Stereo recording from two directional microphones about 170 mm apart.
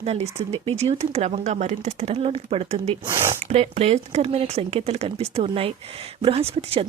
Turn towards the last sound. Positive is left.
turn(degrees=-35)  # may be behind; listen again after turning